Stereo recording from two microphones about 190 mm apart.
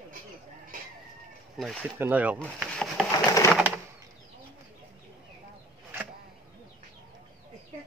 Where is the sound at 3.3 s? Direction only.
15° left (ahead or behind).